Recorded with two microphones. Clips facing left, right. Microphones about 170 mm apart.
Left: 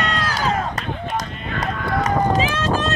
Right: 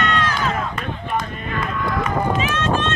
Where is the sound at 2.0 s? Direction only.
35° left (ahead or behind).